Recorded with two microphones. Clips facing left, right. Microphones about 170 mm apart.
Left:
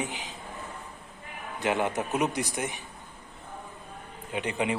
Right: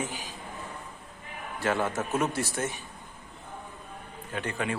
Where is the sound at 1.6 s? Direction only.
20° left (ahead or behind).